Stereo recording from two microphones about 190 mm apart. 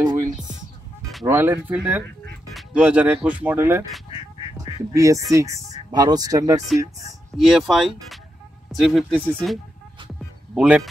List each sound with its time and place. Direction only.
1.2 s speech: 10° right (ahead or behind)
4.9 s speech: 15° right (ahead or behind)
7.3 s speech: centre (ahead or behind)